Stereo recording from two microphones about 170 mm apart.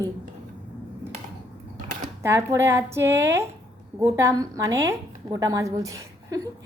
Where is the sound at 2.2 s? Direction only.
15° right (ahead or behind).